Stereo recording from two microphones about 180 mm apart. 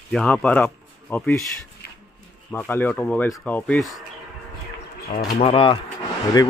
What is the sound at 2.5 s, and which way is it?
A man's voice, 10° left (ahead or behind).